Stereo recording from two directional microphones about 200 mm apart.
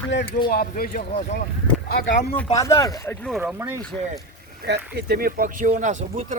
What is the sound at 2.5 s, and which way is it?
Speech, 15° left (ahead or behind).